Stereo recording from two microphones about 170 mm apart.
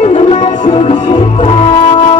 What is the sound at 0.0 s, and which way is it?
Music, 40° left (ahead or behind).